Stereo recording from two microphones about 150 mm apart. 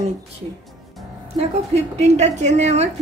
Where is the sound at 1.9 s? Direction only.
50° right (ahead or behind).